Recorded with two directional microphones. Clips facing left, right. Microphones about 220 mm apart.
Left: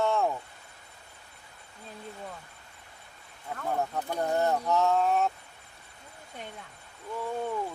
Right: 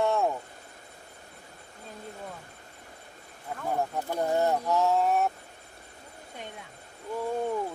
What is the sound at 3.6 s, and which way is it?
Speech, 10° right (ahead or behind).